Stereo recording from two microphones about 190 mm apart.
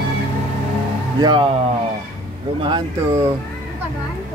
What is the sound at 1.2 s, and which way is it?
Speech, 25° right (ahead or behind).